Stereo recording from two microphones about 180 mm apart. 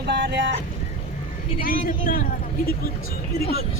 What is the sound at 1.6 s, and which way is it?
Speech, 50° left (ahead or behind).